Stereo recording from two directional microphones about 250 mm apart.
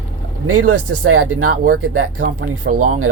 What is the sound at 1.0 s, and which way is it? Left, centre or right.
Speech, right.